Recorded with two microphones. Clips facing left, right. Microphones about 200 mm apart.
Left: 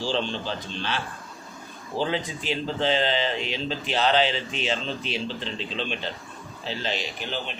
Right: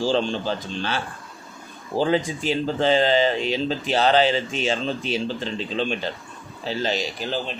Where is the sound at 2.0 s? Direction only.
45° right (ahead or behind).